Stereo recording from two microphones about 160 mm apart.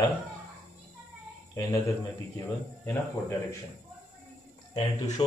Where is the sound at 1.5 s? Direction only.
20° left (ahead or behind).